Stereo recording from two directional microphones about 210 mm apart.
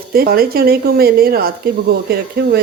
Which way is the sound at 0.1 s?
45° right (ahead or behind).